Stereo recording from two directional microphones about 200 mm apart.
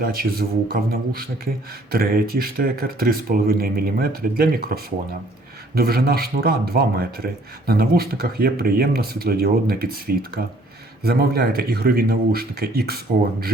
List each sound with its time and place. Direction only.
0.0 s speech: 50° right (ahead or behind)